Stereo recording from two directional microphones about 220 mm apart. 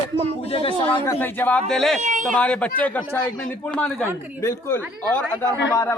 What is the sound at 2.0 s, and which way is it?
Speech, 35° right (ahead or behind).